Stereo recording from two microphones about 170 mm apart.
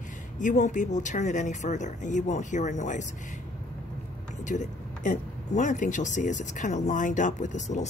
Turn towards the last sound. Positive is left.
turn(degrees=45)  # may be behind; listen again after turning